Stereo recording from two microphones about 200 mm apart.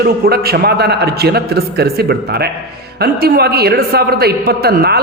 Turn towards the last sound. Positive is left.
turn(degrees=-50)  # may be behind; listen again after turning